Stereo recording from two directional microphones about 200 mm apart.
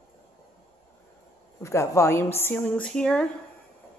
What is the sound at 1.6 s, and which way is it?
A woman's voice, 15° left (ahead or behind).